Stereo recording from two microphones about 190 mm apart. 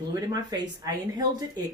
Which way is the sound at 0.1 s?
20° right (ahead or behind).